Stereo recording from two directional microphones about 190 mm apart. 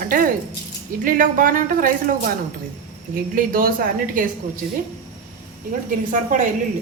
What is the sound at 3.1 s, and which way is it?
A woman's voice, 45° right (ahead or behind).